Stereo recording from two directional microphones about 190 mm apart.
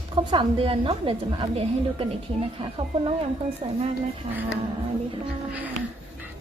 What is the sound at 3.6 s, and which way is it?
Speech, 30° right (ahead or behind).